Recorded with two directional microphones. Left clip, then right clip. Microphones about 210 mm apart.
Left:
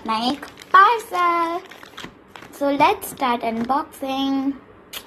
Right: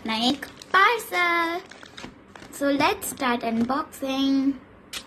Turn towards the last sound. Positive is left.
turn(degrees=-20)  # may be behind; listen again after turning